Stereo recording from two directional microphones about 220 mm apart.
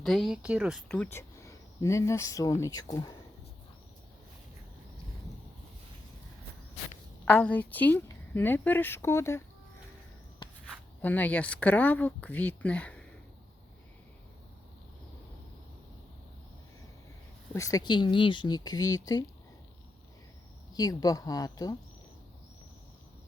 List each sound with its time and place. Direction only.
0.0 s speech: centre (ahead or behind)
0.9 s speech: 5° left (ahead or behind)
7.3 s a woman's voice: 5° left (ahead or behind)
10.4 s a sound: 20° left (ahead or behind)
11.0 s a woman's voice: 10° left (ahead or behind)
17.5 s a woman's voice: 15° left (ahead or behind)
20.7 s a woman's voice: 15° left (ahead or behind)